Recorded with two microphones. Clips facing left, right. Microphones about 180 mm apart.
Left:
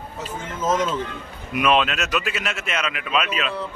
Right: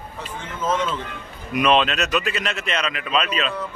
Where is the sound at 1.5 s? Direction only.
5° left (ahead or behind).